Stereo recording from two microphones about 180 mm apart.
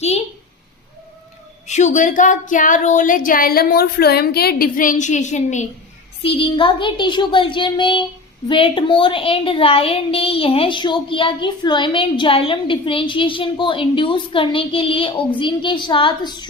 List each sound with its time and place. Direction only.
1.6 s speech: 40° left (ahead or behind)
6.2 s a woman's voice: 30° left (ahead or behind)